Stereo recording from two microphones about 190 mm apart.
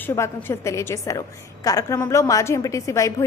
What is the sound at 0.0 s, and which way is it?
A woman's voice, 10° left (ahead or behind).